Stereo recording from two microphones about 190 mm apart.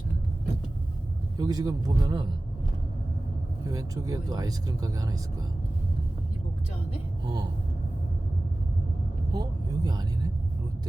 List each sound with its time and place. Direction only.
1.4 s speech: 20° right (ahead or behind)
3.6 s speech: 20° right (ahead or behind)
7.3 s speech: 20° right (ahead or behind)
9.3 s vehicle: 20° right (ahead or behind)